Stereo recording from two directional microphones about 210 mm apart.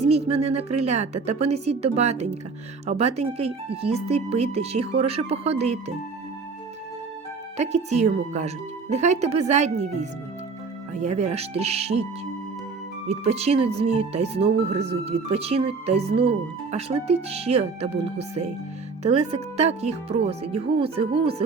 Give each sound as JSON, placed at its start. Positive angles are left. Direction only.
{"t": 0.0, "sound": "a woman's voice", "side_deg": -30}
{"t": 7.5, "sound": "a woman's voice", "side_deg": -35}
{"t": 13.1, "sound": "a woman's voice", "side_deg": -30}